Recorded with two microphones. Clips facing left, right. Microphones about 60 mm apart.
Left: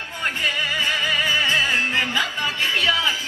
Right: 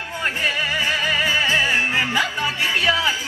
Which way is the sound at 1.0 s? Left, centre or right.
Centre.